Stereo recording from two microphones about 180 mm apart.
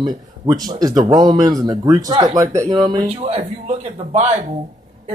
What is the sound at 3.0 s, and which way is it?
A man's voice, 35° right (ahead or behind).